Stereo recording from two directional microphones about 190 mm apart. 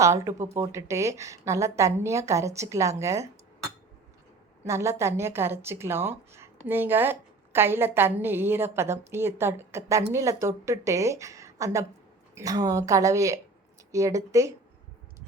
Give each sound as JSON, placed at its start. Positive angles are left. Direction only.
{"t": 0.0, "sound": "a woman's voice", "side_deg": -15}
{"t": 4.6, "sound": "a woman's voice", "side_deg": -15}